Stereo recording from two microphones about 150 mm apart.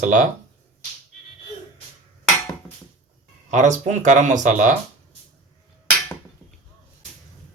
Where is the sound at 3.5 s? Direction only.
55° right (ahead or behind).